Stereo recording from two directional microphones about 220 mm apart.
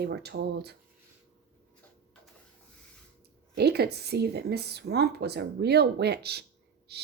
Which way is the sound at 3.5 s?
45° right (ahead or behind).